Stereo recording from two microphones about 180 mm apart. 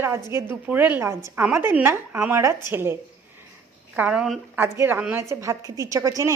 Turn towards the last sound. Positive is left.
turn(degrees=-15)  # may be behind; listen again after turning